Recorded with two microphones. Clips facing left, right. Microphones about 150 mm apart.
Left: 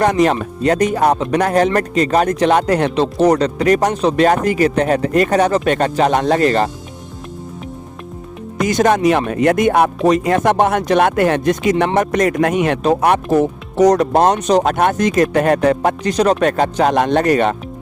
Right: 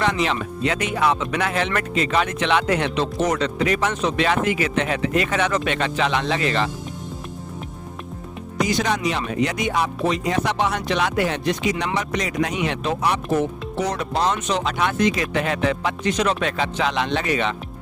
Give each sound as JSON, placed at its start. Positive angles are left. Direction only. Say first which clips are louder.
{"t": 0.0, "sound": "speech", "louder": "left 8 dB", "side_deg": 45}
{"t": 8.5, "sound": "speech", "louder": "left 8 dB", "side_deg": 50}
{"t": 14.3, "sound": "speech", "louder": "left 10 dB", "side_deg": 35}
{"t": 14.6, "sound": "speech", "louder": "left 6 dB", "side_deg": 50}